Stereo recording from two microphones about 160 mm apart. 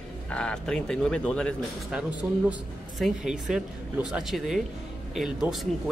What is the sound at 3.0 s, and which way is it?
Speech, 5° right (ahead or behind).